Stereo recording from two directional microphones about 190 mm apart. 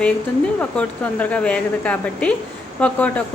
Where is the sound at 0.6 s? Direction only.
5° left (ahead or behind).